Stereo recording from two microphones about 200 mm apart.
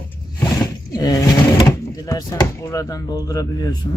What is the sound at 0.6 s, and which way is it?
Speech, 20° left (ahead or behind).